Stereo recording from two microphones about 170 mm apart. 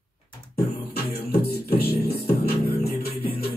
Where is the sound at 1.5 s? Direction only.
65° left (ahead or behind).